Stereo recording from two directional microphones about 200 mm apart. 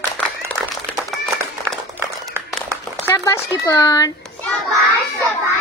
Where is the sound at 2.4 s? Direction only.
10° right (ahead or behind).